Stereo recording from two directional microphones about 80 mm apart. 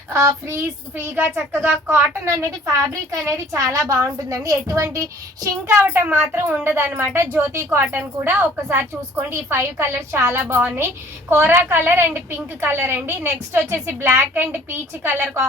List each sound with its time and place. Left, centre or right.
0.1 s a woman's voice: right
3.1 s a woman's voice: right